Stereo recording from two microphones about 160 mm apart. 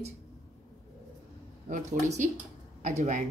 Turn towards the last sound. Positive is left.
turn(degrees=-50)  # may be behind; listen again after turning